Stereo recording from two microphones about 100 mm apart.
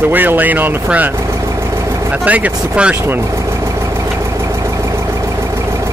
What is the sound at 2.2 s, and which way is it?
Speech, 15° right (ahead or behind).